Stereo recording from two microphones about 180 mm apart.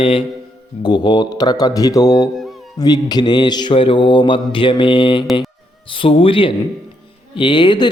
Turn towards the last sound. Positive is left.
turn(degrees=25)  # may be behind; listen again after turning